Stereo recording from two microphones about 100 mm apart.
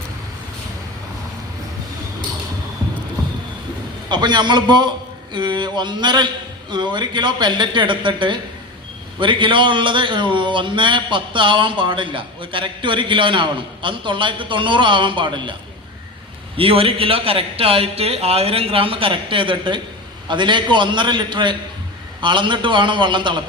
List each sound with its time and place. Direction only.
4.1 s a man's voice: 50° right (ahead or behind)
16.6 s a man's voice: 65° right (ahead or behind)